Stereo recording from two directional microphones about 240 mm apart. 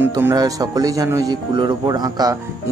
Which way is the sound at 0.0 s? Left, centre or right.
Centre.